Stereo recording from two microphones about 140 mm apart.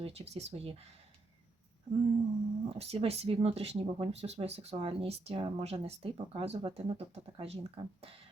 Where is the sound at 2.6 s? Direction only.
45° right (ahead or behind).